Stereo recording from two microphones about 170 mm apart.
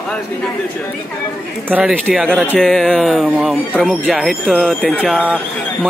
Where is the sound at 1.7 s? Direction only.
10° right (ahead or behind).